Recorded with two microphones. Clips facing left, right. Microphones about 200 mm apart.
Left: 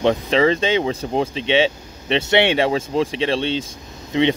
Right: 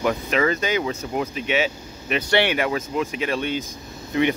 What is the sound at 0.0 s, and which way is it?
Speech, 30° left (ahead or behind).